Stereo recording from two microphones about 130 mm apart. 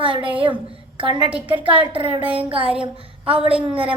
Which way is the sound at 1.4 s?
40° right (ahead or behind).